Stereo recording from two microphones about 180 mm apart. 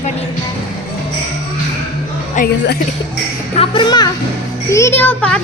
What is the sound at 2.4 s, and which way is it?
Speech, 45° left (ahead or behind).